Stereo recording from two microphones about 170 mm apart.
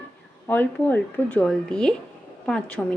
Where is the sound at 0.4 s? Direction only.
10° left (ahead or behind).